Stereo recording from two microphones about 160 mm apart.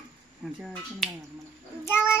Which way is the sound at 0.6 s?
Centre (ahead or behind).